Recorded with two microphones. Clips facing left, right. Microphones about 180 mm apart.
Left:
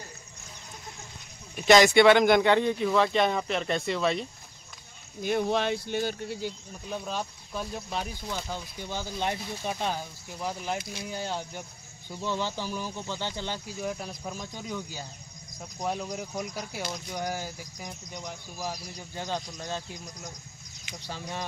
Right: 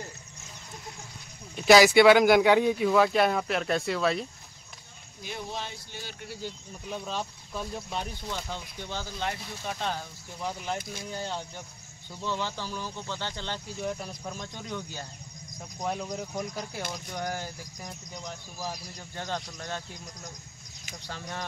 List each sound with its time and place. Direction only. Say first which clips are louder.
1.7 s speech: right 1 dB; 5° right (ahead or behind)
5.2 s speech: left 11 dB; 60° left (ahead or behind)
6.4 s speech: left 3 dB; 5° left (ahead or behind)
19.1 s speech: left 1 dB; 15° left (ahead or behind)